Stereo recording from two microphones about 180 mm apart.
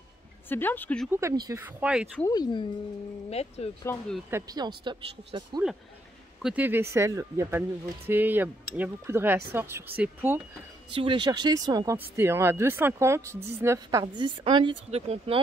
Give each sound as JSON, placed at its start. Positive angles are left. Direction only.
{"t": 0.5, "sound": "speech", "side_deg": 10}
{"t": 1.1, "sound": "speech", "side_deg": -20}
{"t": 2.2, "sound": "speech", "side_deg": 20}
{"t": 3.3, "sound": "speech", "side_deg": 35}
{"t": 4.3, "sound": "speech", "side_deg": -20}
{"t": 6.4, "sound": "speech", "side_deg": -10}
{"t": 10.9, "sound": "speech", "side_deg": -30}